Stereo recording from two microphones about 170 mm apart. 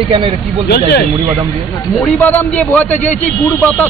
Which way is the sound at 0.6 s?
70° left (ahead or behind).